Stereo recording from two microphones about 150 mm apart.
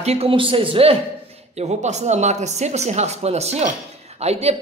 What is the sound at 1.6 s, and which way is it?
A man's voice, 50° right (ahead or behind).